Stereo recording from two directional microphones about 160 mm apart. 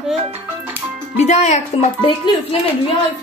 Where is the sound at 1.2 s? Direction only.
45° left (ahead or behind).